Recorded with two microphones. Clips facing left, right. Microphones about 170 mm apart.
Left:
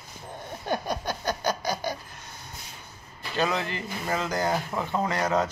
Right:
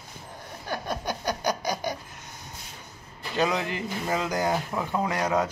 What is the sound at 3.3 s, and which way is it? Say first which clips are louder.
A man's voice: right 1 dB; 15° right (ahead or behind).